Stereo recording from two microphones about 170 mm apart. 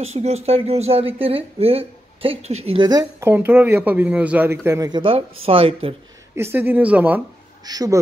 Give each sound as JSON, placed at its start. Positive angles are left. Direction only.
{"t": 0.0, "sound": "speech", "side_deg": -40}
{"t": 6.3, "sound": "speech", "side_deg": -15}
{"t": 7.6, "sound": "speech", "side_deg": -20}